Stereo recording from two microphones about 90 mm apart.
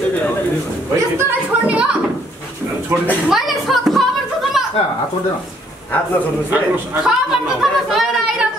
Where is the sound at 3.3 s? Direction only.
Centre (ahead or behind).